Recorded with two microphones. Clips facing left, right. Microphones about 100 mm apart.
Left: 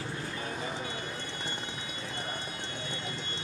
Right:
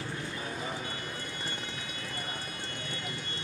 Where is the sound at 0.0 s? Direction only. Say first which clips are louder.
Even; 25° left (ahead or behind).